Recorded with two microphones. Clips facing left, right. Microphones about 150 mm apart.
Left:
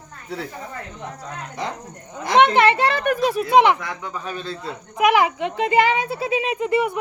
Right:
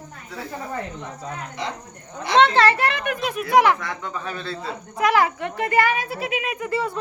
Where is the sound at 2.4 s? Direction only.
15° left (ahead or behind); by 3.5 s 35° left (ahead or behind).